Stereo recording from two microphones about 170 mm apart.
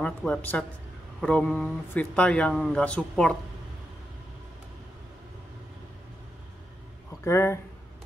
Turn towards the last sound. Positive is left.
turn(degrees=15)  # may be behind; listen again after turning